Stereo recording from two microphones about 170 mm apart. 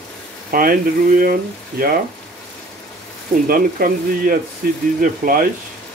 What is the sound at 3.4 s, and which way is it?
Speech, 55° right (ahead or behind).